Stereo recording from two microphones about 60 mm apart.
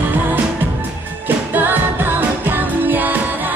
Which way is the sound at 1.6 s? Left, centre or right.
Right.